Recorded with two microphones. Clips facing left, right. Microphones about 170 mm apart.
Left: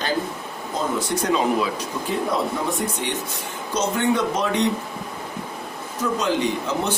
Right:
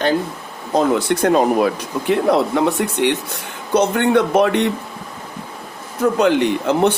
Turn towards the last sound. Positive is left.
turn(degrees=-65)  # may be behind; listen again after turning